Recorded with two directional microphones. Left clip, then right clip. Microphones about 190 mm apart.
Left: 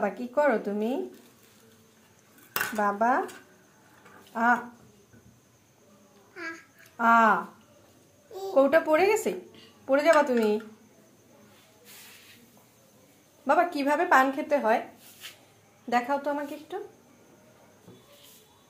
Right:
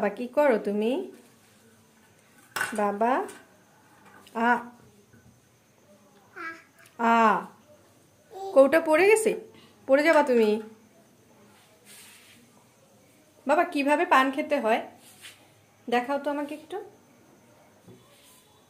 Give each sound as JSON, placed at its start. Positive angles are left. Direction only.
{"t": 0.0, "sound": "speech", "side_deg": -25}
{"t": 2.8, "sound": "speech", "side_deg": -20}
{"t": 4.3, "sound": "speech", "side_deg": -25}
{"t": 7.0, "sound": "speech", "side_deg": -25}
{"t": 8.5, "sound": "speech", "side_deg": -30}
{"t": 13.5, "sound": "a woman's voice", "side_deg": -10}
{"t": 15.9, "sound": "a woman's voice", "side_deg": -10}